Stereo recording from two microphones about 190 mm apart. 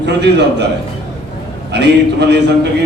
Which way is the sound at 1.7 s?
60° right (ahead or behind).